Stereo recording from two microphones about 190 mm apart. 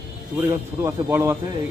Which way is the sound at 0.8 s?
15° right (ahead or behind).